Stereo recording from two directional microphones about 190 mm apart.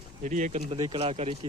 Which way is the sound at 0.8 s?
25° right (ahead or behind).